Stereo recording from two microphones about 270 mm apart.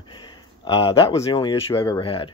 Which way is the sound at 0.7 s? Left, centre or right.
Centre.